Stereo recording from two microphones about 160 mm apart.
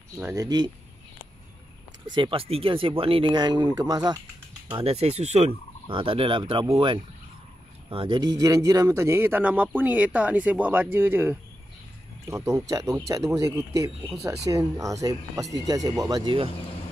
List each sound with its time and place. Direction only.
0.2 s speech: 20° right (ahead or behind)
2.1 s speech: 30° right (ahead or behind)
4.6 s speech: 35° right (ahead or behind)